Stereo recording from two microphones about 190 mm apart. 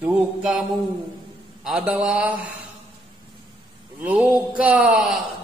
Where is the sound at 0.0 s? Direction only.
5° right (ahead or behind).